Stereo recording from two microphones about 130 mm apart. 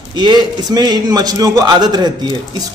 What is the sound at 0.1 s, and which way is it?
A man's voice, 35° right (ahead or behind).